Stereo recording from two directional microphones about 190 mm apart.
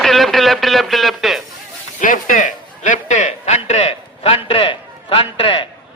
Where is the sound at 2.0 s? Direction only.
45° left (ahead or behind).